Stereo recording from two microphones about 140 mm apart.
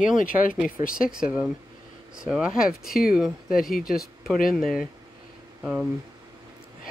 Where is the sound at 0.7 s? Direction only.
85° left.